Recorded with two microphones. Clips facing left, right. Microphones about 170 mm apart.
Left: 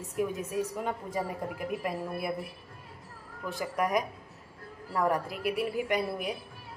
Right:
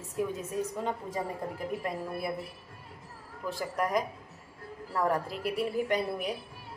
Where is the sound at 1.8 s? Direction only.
10° left (ahead or behind).